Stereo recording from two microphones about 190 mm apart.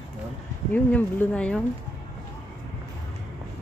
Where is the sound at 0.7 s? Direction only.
10° left (ahead or behind).